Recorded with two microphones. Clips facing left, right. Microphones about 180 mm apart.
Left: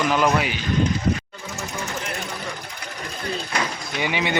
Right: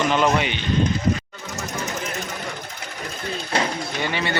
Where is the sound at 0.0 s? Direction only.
5° left (ahead or behind).